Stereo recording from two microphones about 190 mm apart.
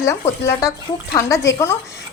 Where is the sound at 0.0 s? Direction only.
15° left (ahead or behind).